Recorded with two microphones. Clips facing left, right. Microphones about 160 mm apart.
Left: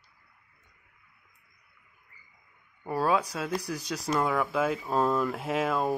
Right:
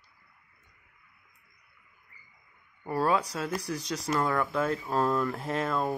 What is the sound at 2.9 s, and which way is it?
Speech, 5° left (ahead or behind).